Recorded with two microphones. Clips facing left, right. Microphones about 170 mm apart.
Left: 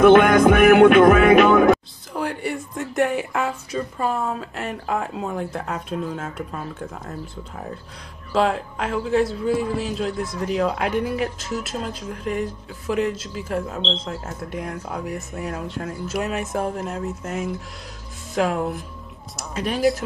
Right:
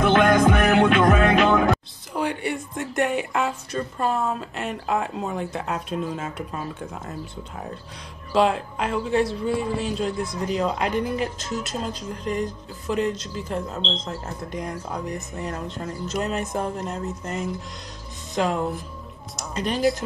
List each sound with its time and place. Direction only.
0.0 s music: 55° left (ahead or behind)
2.1 s a sound: centre (ahead or behind)
2.9 s a man's voice: centre (ahead or behind)